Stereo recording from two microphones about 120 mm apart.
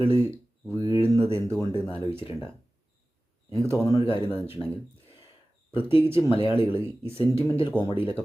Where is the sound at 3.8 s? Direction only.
30° left (ahead or behind).